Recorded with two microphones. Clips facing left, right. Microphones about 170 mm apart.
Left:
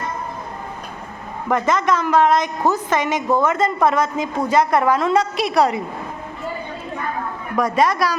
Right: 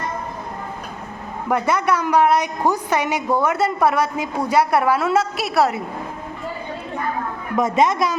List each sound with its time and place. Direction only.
1.5 s a woman's voice: 10° right (ahead or behind)
7.5 s a woman's voice: 20° right (ahead or behind)